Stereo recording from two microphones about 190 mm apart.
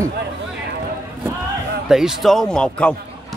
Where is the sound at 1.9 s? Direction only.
Centre (ahead or behind).